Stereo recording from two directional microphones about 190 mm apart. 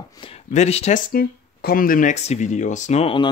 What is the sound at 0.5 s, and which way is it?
Speech, 35° left (ahead or behind).